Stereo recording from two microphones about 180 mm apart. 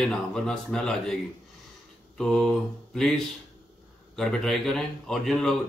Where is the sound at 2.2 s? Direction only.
5° left (ahead or behind).